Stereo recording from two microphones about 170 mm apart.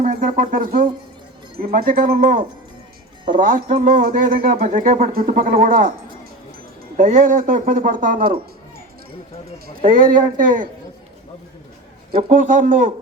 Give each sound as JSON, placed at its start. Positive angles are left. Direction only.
{"t": 0.0, "sound": "speech", "side_deg": -50}
{"t": 3.4, "sound": "speech", "side_deg": -50}
{"t": 6.9, "sound": "speech", "side_deg": -50}
{"t": 9.6, "sound": "speech", "side_deg": -55}
{"t": 12.1, "sound": "speech", "side_deg": -50}